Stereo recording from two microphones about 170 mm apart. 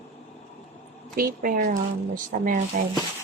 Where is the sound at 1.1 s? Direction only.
55° right (ahead or behind).